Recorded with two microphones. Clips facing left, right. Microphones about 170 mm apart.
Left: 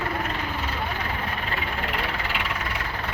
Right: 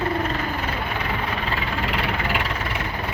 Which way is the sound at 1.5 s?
90° right.